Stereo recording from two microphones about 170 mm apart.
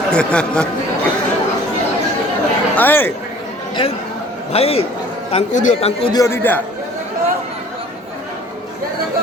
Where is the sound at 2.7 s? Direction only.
10° left (ahead or behind).